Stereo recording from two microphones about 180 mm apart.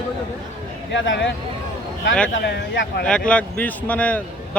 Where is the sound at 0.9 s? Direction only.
90° left.